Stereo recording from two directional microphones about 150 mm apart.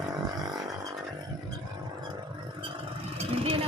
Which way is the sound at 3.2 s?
40° right (ahead or behind).